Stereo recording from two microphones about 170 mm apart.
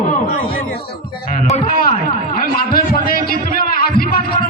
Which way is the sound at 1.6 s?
60° left (ahead or behind).